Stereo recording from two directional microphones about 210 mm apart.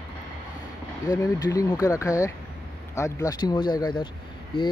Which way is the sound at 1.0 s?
15° left (ahead or behind).